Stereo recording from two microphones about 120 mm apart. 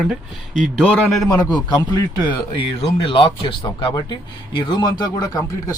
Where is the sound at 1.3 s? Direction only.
35° left (ahead or behind).